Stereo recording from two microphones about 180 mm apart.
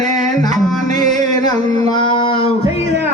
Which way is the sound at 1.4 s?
20° left (ahead or behind).